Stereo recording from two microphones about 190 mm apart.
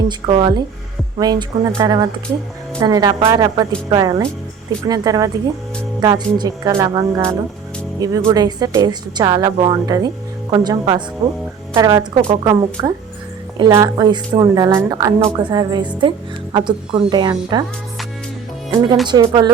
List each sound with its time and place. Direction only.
0.1 s speech: 25° right (ahead or behind)
11.2 s speech: 35° right (ahead or behind)
11.7 s speech: 20° right (ahead or behind)
19.0 s speech: 20° right (ahead or behind)